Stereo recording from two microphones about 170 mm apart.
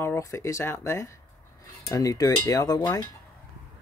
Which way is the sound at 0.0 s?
15° left (ahead or behind).